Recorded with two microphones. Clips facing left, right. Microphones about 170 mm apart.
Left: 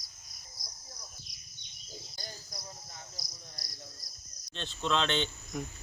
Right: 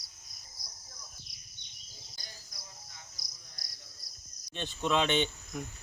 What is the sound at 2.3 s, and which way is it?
Cricket, 35° left (ahead or behind).